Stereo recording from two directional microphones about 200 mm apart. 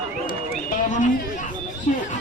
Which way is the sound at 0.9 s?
40° left (ahead or behind).